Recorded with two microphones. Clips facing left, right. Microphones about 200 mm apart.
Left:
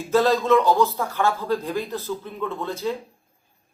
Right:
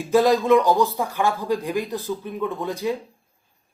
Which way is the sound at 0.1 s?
15° right (ahead or behind).